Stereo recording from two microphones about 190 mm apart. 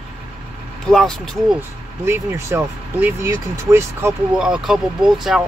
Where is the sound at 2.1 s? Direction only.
15° right (ahead or behind).